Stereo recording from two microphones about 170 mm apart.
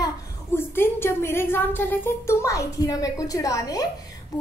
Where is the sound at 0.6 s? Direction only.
15° left (ahead or behind).